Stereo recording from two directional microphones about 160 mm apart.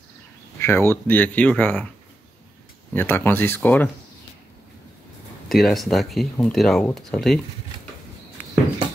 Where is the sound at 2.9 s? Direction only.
10° left (ahead or behind).